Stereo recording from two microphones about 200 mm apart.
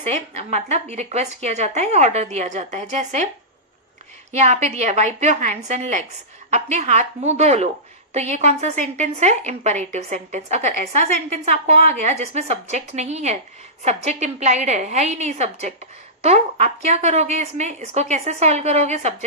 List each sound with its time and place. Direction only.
0.0 s a woman's voice: 30° right (ahead or behind)
4.3 s a woman's voice: 35° right (ahead or behind)